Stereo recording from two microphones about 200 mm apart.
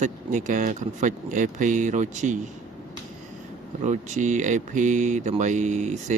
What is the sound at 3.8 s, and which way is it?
Speech, 35° right (ahead or behind).